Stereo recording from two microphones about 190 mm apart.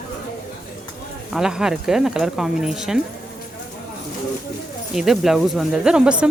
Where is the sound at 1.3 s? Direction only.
5° right (ahead or behind).